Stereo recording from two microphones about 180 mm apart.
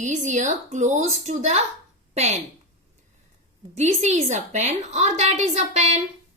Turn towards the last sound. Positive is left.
turn(degrees=-40)  # may be behind; listen again after turning